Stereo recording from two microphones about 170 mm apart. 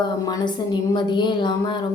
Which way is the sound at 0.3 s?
25° left (ahead or behind).